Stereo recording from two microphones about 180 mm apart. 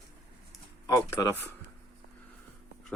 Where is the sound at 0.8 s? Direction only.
15° left (ahead or behind).